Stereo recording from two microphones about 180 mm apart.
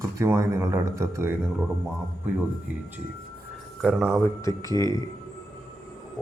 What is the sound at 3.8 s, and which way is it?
Speech, 5° right (ahead or behind).